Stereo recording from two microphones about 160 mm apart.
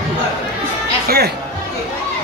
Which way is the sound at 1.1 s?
80° right.